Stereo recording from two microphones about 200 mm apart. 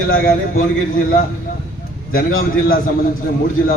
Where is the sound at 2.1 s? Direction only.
45° left (ahead or behind).